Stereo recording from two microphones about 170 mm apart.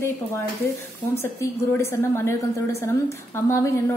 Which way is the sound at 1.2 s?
15° left (ahead or behind).